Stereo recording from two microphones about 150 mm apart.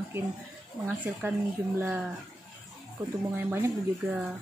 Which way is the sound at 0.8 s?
15° right (ahead or behind).